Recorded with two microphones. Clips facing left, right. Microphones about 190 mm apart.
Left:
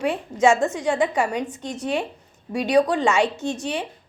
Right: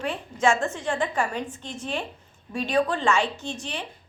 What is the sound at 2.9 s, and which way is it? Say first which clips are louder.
Speech: left 3 dB; 15° left (ahead or behind).